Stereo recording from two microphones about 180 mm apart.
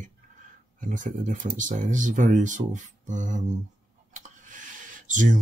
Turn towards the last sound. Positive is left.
turn(degrees=-45)  # may be behind; listen again after turning